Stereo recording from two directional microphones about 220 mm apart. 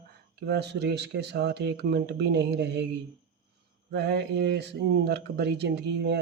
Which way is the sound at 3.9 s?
50° right (ahead or behind).